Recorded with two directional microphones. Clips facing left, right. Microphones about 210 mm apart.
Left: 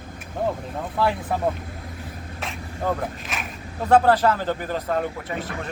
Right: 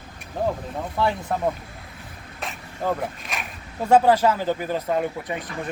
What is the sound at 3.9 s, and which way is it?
Speech, 10° right (ahead or behind).